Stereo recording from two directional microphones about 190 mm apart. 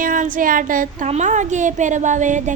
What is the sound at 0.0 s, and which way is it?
A woman's voice, 45° right (ahead or behind).